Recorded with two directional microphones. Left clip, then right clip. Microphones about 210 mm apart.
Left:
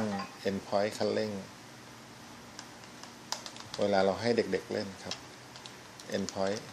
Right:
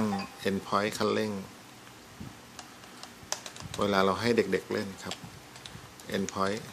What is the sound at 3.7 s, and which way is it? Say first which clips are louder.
Speech: right 1 dB; 25° right (ahead or behind).